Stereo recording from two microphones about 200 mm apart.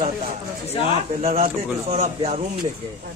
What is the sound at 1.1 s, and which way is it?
A man's voice, 40° right (ahead or behind).